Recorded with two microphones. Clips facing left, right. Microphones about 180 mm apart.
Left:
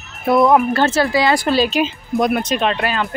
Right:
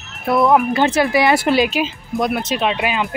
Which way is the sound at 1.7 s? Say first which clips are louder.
Left 2 dB; 5° right (ahead or behind).